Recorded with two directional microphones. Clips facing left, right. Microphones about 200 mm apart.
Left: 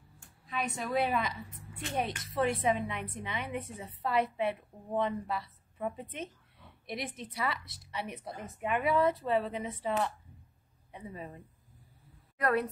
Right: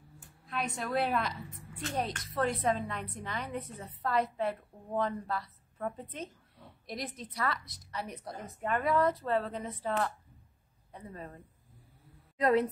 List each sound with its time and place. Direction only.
0.2 s a woman's voice: centre (ahead or behind)
5.0 s a woman's voice: 15° left (ahead or behind)
9.6 s a woman's voice: 5° left (ahead or behind)
12.4 s a woman's voice: 20° right (ahead or behind)